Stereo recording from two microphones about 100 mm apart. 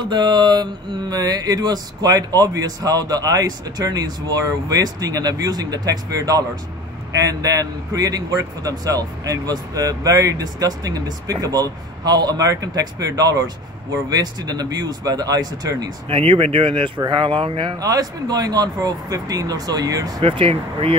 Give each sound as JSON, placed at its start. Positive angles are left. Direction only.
{"t": 0.0, "sound": "mantra", "side_deg": -45}
{"t": 16.1, "sound": "speech", "side_deg": -65}
{"t": 17.7, "sound": "mantra", "side_deg": -40}
{"t": 20.2, "sound": "speech", "side_deg": -60}